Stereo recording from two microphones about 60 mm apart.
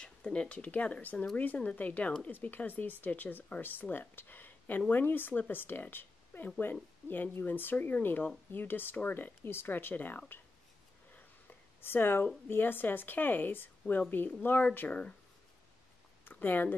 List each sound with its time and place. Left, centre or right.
0.0 s speech: centre
11.8 s speech: left
14.9 s speech: centre
16.3 s speech: left